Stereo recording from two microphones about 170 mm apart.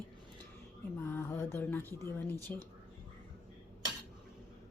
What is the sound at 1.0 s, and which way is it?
Cutlery, 15° left (ahead or behind).